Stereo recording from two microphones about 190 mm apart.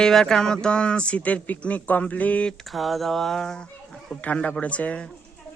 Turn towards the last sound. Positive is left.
turn(degrees=5)  # may be behind; listen again after turning